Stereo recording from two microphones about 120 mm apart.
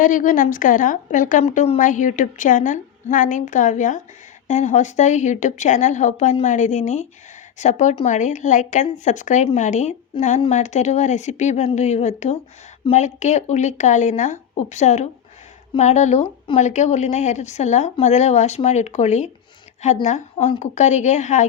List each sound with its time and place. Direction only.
0.0 s a woman's voice: 90° left
4.4 s a woman's voice: 75° left (ahead or behind)